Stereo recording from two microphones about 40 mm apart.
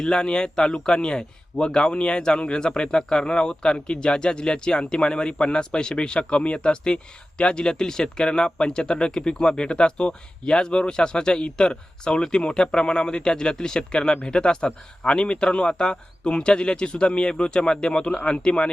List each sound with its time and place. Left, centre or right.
0.0 s a man's voice: left